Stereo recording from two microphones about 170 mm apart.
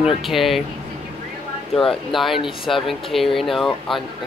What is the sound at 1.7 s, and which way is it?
Speech, centre (ahead or behind).